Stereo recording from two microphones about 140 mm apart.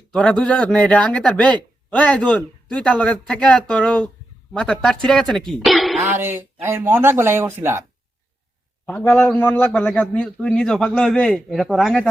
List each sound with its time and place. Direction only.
0.1 s a man's voice: 5° left (ahead or behind)
5.5 s throat clearing: centre (ahead or behind)
6.0 s speech: 15° right (ahead or behind)
8.9 s a man's voice: 10° left (ahead or behind)